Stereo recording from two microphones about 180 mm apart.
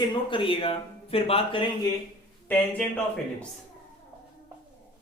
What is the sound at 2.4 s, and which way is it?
Speech, 10° left (ahead or behind).